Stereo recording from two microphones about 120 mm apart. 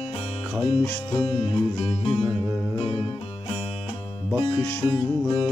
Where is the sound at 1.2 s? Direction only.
60° left (ahead or behind).